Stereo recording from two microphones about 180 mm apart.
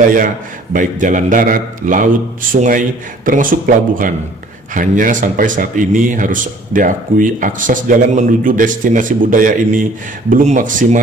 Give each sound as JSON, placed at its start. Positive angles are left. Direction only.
{"t": 0.7, "sound": "a man's voice", "side_deg": -45}